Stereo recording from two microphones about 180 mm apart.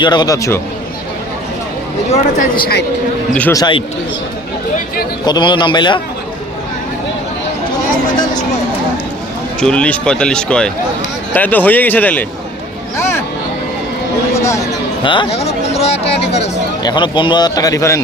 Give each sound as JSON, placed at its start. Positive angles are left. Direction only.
{"t": 0.0, "sound": "a man's voice", "side_deg": 25}
{"t": 2.4, "sound": "a man's voice", "side_deg": 55}
{"t": 3.5, "sound": "a man's voice", "side_deg": 25}
{"t": 5.2, "sound": "a man's voice", "side_deg": 25}
{"t": 9.6, "sound": "speech", "side_deg": 5}
{"t": 13.0, "sound": "a sound", "side_deg": 15}
{"t": 14.3, "sound": "a sound", "side_deg": 15}
{"t": 15.0, "sound": "speech", "side_deg": 25}
{"t": 16.8, "sound": "a man's voice", "side_deg": 25}